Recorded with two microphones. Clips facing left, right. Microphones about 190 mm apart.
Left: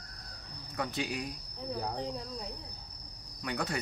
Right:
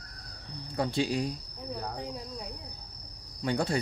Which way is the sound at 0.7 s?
30° right (ahead or behind).